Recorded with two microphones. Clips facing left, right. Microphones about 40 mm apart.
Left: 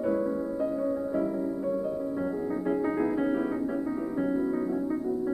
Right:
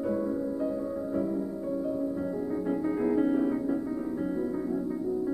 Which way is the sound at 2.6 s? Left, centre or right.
Centre.